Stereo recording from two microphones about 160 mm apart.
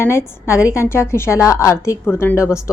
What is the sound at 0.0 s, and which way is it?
A woman's voice, 15° left (ahead or behind).